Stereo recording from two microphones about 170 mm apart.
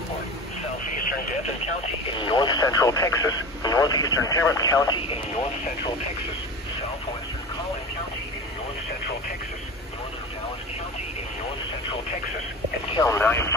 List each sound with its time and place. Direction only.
2.1 s speech: 30° left (ahead or behind)
12.9 s speech: 20° left (ahead or behind)